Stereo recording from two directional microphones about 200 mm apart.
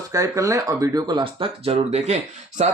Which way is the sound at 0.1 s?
15° right (ahead or behind).